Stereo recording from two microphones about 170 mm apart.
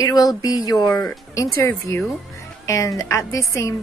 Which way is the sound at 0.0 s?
20° left (ahead or behind).